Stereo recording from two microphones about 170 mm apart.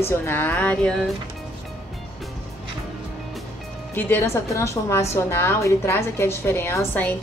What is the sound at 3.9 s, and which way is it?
A woman's voice, 10° left (ahead or behind).